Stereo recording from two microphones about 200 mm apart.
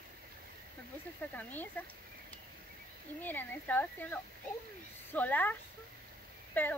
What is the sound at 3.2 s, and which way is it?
Speech, 10° left (ahead or behind).